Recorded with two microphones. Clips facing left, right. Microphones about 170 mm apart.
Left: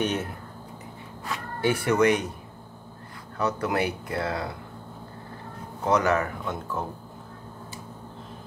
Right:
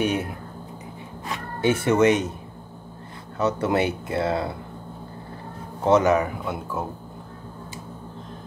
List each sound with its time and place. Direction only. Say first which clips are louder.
0.0 s a sound: right 3 dB; 10° right (ahead or behind)
1.2 s speech: right 3 dB; 20° right (ahead or behind)
3.3 s speech: right 4 dB; 25° right (ahead or behind)
5.9 s speech: right 5 dB; 20° right (ahead or behind)